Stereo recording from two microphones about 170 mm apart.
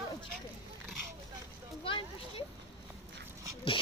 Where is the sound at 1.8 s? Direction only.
30° left (ahead or behind).